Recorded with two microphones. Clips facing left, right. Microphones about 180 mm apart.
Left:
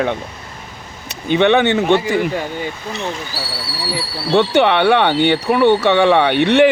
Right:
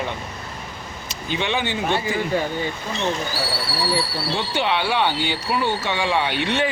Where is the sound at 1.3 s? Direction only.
65° left (ahead or behind).